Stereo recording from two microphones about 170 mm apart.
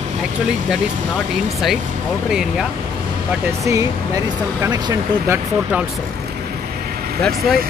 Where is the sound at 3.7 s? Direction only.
20° right (ahead or behind).